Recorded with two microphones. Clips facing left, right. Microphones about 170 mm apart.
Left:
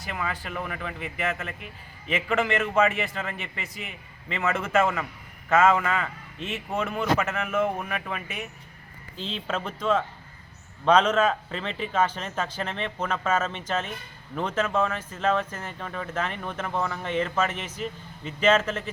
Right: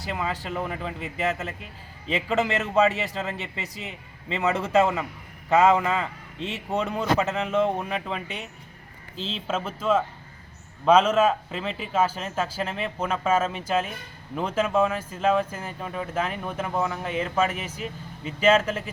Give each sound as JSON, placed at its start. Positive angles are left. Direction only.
{"t": 0.0, "sound": "a man's voice", "side_deg": -25}
{"t": 9.2, "sound": "speech", "side_deg": -5}